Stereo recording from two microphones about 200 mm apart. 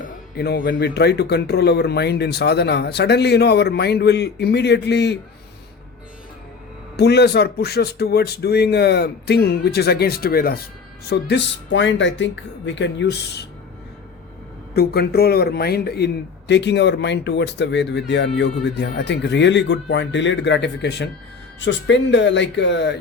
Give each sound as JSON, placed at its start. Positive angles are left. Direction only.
{"t": 0.3, "sound": "a man's voice", "side_deg": 55}
{"t": 6.9, "sound": "a man's voice", "side_deg": 55}
{"t": 14.7, "sound": "a man's voice", "side_deg": 55}